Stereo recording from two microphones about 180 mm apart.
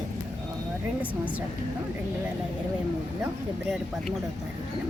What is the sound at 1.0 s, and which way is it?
Speech, 10° right (ahead or behind).